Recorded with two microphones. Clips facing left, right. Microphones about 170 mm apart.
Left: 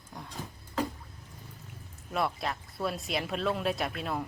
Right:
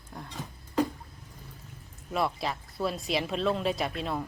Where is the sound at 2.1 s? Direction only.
Centre (ahead or behind).